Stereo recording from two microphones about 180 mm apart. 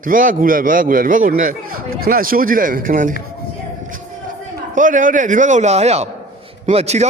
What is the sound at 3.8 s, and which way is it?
Crowd, 45° right (ahead or behind).